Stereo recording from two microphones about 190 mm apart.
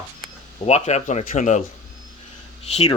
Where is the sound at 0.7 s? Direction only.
35° left (ahead or behind).